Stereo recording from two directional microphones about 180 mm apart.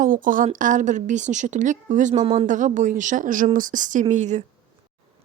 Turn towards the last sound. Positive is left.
turn(degrees=-40)  # may be behind; listen again after turning